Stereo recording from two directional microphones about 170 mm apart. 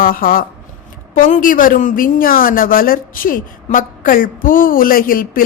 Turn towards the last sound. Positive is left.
turn(degrees=55)  # may be behind; listen again after turning